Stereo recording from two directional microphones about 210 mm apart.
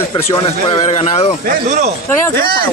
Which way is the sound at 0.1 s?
15° left (ahead or behind).